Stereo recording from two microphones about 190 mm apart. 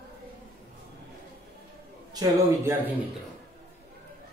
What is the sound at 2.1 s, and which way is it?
Speech, 15° right (ahead or behind).